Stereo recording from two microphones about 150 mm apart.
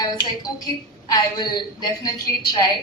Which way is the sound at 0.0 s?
25° left (ahead or behind).